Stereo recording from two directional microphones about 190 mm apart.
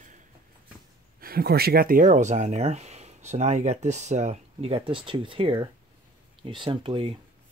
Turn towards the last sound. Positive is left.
turn(degrees=-30)  # may be behind; listen again after turning